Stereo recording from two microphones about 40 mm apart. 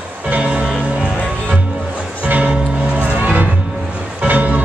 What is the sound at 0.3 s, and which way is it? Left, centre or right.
Music, right.